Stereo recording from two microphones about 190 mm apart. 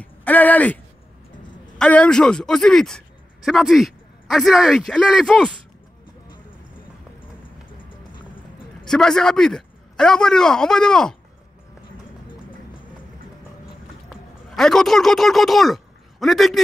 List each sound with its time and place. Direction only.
0.0 s speech: 10° left (ahead or behind)
1.8 s a man's voice: 5° left (ahead or behind)
8.1 s music: 25° left (ahead or behind)
8.8 s a man's voice: 5° left (ahead or behind)
13.7 s a sound: centre (ahead or behind)